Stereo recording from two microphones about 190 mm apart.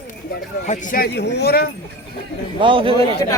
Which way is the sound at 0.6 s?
40° left (ahead or behind).